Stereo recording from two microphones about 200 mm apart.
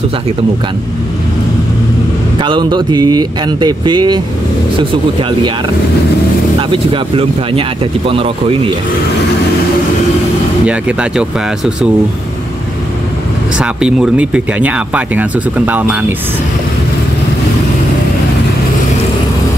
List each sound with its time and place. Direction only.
2.4 s speech: 25° right (ahead or behind)
6.7 s speech: 25° right (ahead or behind)
10.6 s speech: 5° right (ahead or behind)
13.6 s speech: 5° right (ahead or behind)